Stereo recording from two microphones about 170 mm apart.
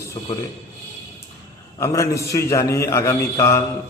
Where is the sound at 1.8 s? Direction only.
20° left (ahead or behind).